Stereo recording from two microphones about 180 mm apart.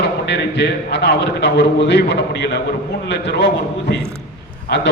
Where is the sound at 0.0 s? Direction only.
65° left (ahead or behind).